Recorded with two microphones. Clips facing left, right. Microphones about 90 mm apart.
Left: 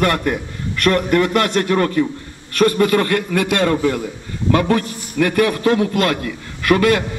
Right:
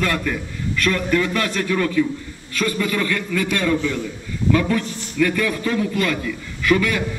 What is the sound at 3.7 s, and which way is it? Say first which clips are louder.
Speech: left 3 dB; 50° left (ahead or behind).